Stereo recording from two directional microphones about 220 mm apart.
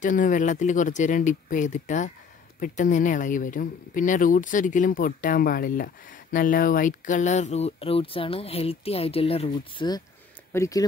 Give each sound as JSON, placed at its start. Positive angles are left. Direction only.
{"t": 0.0, "sound": "speech", "side_deg": 35}